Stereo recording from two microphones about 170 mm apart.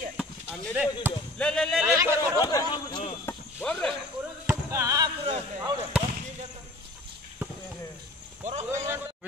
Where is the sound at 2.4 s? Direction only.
25° left (ahead or behind).